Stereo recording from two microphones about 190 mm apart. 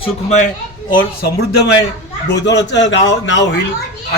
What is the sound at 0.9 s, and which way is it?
Speech, 55° left (ahead or behind).